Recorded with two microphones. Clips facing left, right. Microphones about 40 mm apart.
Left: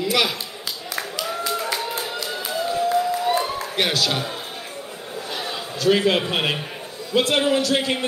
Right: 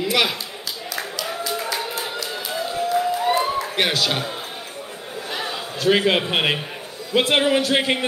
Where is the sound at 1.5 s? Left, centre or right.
Centre.